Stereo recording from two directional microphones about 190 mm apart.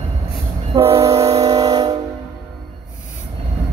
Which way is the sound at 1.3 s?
20° right (ahead or behind).